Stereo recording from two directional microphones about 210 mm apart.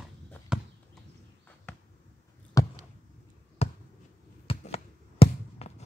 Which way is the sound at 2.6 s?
15° left (ahead or behind).